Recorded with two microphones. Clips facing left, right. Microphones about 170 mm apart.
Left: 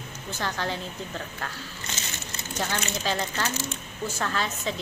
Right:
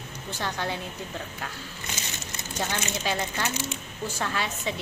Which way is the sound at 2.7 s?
15° right (ahead or behind).